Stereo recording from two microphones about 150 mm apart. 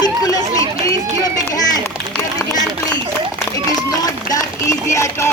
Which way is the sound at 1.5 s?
25° left (ahead or behind).